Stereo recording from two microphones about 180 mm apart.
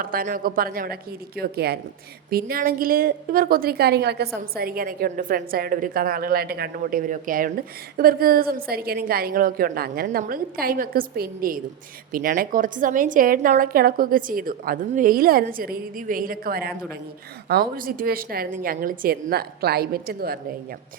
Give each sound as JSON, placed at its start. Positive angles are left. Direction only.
{"t": 0.0, "sound": "a woman's voice", "side_deg": -50}